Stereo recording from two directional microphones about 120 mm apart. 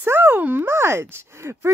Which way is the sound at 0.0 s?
20° right (ahead or behind).